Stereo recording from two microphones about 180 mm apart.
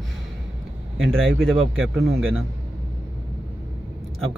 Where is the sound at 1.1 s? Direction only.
90° right.